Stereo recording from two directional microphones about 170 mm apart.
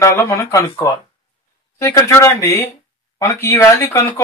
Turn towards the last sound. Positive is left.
turn(degrees=15)  # may be behind; listen again after turning